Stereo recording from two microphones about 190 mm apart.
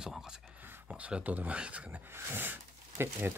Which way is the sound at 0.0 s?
5° right (ahead or behind).